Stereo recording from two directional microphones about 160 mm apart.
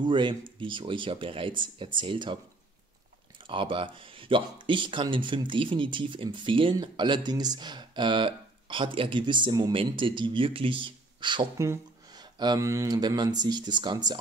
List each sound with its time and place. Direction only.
0.0 s speech: 30° right (ahead or behind)
3.4 s speech: 30° right (ahead or behind)